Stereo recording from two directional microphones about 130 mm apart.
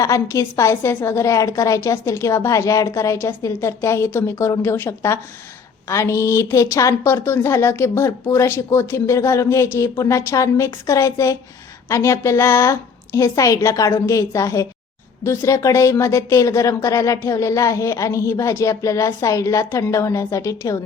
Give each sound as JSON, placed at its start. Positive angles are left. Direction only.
{"t": 0.0, "sound": "speech", "side_deg": 25}